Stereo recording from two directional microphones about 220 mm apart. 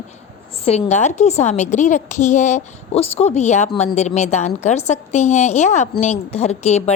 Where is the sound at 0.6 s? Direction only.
30° left (ahead or behind).